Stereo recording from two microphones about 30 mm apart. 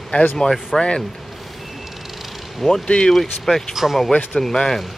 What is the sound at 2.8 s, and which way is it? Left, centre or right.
Speech, left.